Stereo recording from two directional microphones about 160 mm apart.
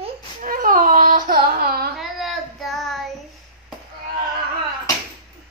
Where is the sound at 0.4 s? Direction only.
60° right (ahead or behind).